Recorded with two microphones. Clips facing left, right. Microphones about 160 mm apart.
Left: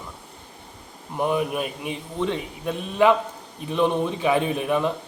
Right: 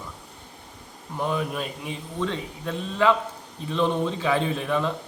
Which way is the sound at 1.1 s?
15° left (ahead or behind).